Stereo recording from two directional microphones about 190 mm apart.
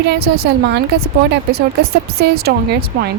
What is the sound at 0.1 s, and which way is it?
A woman's voice, 60° right (ahead or behind).